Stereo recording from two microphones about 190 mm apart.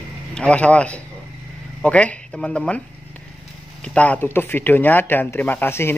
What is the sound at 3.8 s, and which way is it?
Speech, 5° left (ahead or behind).